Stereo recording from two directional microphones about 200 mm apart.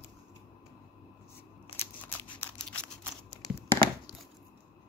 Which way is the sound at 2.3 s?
5° left (ahead or behind).